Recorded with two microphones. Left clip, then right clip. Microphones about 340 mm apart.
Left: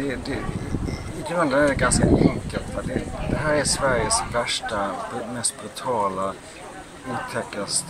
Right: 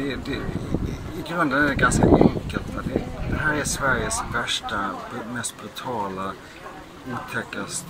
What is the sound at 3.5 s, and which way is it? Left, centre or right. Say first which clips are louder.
Speech: left 2 dB; centre.